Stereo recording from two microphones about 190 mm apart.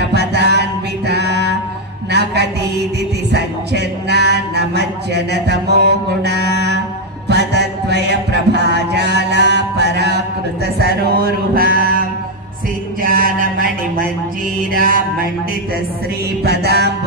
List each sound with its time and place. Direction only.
0.1 s music: 60° right (ahead or behind)
2.0 s a sound: 60° right (ahead or behind)
3.3 s music: 60° right (ahead or behind)
10.8 s mantra: 55° right (ahead or behind)
13.0 s mantra: 50° right (ahead or behind)
16.4 s music: 60° right (ahead or behind)